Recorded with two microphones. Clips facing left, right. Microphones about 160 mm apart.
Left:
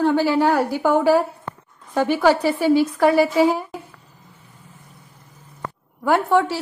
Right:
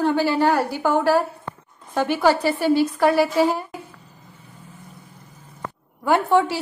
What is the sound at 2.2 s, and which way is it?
A woman's voice, 10° left (ahead or behind).